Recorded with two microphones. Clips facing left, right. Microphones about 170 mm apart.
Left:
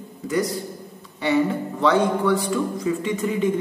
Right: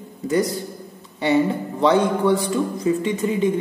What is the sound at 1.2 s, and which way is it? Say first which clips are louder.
Speech: right 2 dB; 20° right (ahead or behind).